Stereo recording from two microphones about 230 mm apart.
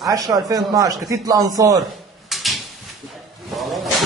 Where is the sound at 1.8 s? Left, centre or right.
Centre.